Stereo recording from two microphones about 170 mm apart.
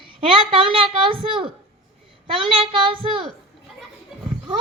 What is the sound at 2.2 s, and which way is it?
A child's voice, 30° right (ahead or behind).